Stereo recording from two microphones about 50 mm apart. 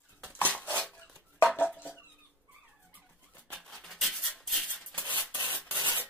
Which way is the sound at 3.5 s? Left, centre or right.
Centre.